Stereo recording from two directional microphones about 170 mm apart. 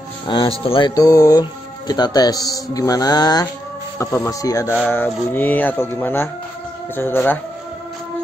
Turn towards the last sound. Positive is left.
turn(degrees=10)  # may be behind; listen again after turning